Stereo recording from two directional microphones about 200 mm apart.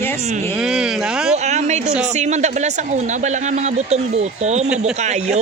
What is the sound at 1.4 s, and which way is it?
A man's voice, 35° right (ahead or behind).